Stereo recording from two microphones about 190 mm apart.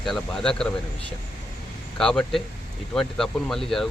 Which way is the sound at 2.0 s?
5° left (ahead or behind).